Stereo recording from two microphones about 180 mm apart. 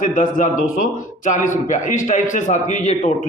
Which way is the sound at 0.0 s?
45° left (ahead or behind).